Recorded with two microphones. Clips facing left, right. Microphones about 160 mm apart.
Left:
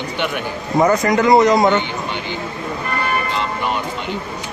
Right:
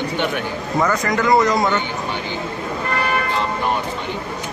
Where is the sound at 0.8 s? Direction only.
20° left (ahead or behind).